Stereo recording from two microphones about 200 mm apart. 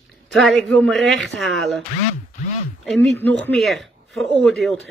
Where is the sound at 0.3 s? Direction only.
Centre (ahead or behind).